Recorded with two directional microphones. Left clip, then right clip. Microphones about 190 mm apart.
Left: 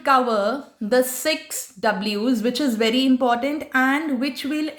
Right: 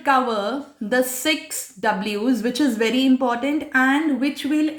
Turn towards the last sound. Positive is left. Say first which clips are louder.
# right 3 dB
turn(degrees=30)  # may be behind; listen again after turning